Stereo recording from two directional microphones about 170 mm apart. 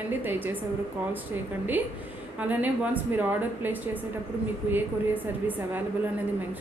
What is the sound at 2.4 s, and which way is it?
A woman's voice, 10° right (ahead or behind).